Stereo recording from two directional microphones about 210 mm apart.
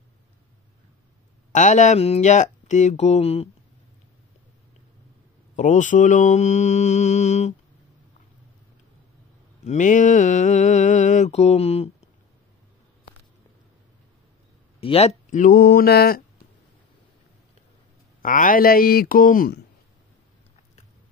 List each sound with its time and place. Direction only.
1.5 s mantra: 35° left (ahead or behind)
5.6 s mantra: 35° left (ahead or behind)
9.7 s mantra: 35° left (ahead or behind)
14.8 s mantra: 30° left (ahead or behind); by 16.2 s 50° left (ahead or behind)
18.2 s speech: 40° left (ahead or behind)